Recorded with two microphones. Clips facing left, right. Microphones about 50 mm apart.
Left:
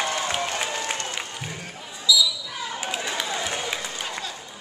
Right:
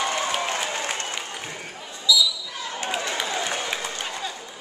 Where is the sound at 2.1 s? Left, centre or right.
Centre.